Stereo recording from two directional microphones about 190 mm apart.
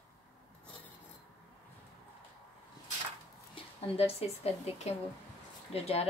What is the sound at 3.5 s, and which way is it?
Speech, 30° left (ahead or behind).